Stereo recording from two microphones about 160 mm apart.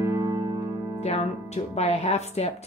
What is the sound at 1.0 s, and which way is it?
Speech, 40° left (ahead or behind).